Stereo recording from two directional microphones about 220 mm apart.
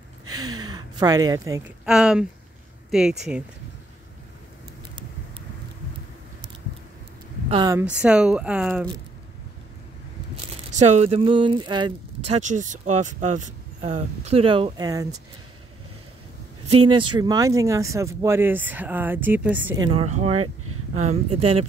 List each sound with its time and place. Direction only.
0.5 s a sound: 15° right (ahead or behind)
1.9 s speech: 5° right (ahead or behind)
7.4 s speech: 20° right (ahead or behind)
8.0 s speech: 5° right (ahead or behind)
10.7 s speech: 30° right (ahead or behind)
12.3 s speech: 35° right (ahead or behind); by 15.1 s 15° right (ahead or behind)
16.7 s speech: 25° right (ahead or behind); by 19.8 s 5° right (ahead or behind)
19.8 s speech: 25° right (ahead or behind)